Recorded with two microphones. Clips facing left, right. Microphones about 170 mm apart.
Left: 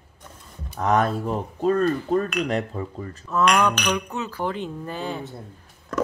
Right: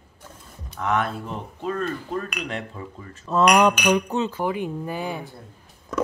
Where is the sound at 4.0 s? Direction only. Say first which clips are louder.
Right 5 dB; 30° right (ahead or behind).